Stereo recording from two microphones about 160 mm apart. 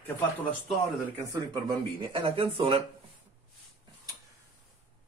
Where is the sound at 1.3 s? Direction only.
30° right (ahead or behind).